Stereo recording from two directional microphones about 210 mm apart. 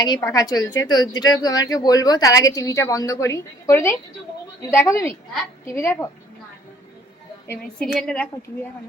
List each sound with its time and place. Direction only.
0.0 s a woman's voice: 15° left (ahead or behind)
7.5 s a woman's voice: centre (ahead or behind)